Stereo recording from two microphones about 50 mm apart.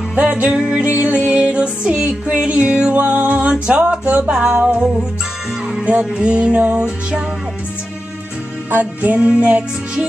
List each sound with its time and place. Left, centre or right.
0.1 s music: right
0.8 s music: right
5.9 s music: right
8.6 s music: right
9.1 s music: right